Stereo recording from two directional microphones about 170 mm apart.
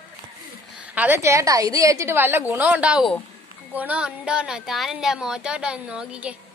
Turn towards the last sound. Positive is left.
turn(degrees=-5)  # may be behind; listen again after turning